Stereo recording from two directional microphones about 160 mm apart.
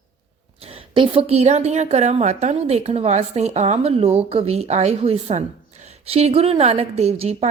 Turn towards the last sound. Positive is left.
turn(degrees=-40)  # may be behind; listen again after turning